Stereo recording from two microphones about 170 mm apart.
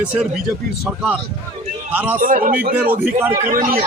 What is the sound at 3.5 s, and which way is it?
Speech, 55° right (ahead or behind).